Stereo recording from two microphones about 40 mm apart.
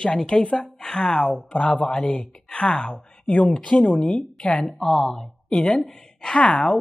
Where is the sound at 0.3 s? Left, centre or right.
Left.